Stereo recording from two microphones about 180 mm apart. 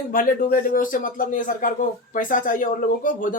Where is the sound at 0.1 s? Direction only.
50° left (ahead or behind).